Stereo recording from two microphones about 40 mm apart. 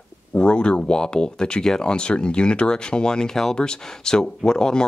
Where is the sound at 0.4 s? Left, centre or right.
Left.